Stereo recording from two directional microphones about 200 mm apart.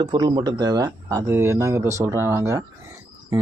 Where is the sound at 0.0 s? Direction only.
25° right (ahead or behind).